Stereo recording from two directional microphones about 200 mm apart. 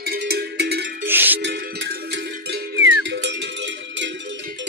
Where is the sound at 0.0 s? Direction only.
55° right (ahead or behind).